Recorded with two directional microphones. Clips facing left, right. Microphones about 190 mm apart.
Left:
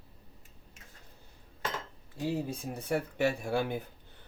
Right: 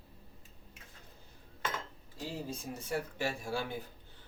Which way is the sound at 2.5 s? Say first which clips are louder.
Left 5 dB; 60° left (ahead or behind).